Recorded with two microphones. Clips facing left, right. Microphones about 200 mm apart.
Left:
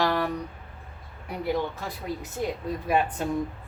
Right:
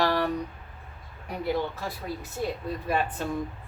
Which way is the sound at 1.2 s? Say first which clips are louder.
Left 1 dB; 15° left (ahead or behind).